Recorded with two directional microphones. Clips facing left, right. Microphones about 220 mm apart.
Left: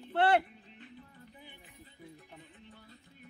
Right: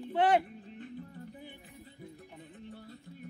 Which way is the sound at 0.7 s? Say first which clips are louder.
Right 8 dB; 45° right (ahead or behind).